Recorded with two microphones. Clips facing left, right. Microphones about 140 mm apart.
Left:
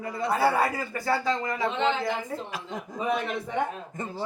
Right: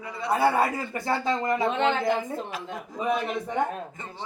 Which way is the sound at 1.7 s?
55° right (ahead or behind).